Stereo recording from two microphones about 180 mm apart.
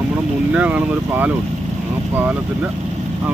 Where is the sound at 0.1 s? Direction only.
10° right (ahead or behind).